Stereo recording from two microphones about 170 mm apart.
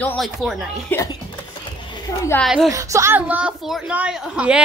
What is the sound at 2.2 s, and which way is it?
Speech, 15° left (ahead or behind).